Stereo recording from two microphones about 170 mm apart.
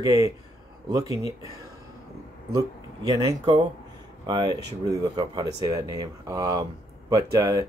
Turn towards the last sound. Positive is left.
turn(degrees=-20)  # may be behind; listen again after turning